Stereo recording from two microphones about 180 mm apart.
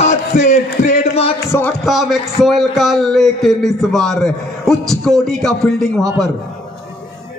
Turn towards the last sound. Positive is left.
turn(degrees=5)  # may be behind; listen again after turning